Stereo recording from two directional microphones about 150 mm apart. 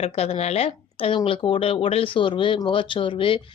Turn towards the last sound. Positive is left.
turn(degrees=35)  # may be behind; listen again after turning